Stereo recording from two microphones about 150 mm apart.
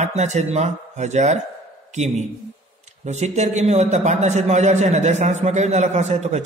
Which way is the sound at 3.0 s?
50° right (ahead or behind).